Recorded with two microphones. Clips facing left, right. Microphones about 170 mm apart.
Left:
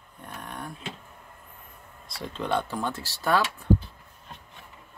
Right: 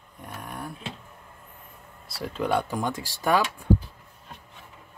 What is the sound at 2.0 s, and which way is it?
Speech, 5° right (ahead or behind).